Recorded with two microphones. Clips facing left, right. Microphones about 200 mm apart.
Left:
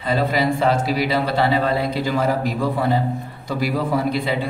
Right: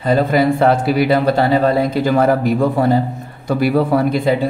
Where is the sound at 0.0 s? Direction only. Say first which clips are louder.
Right 6 dB; 50° right (ahead or behind).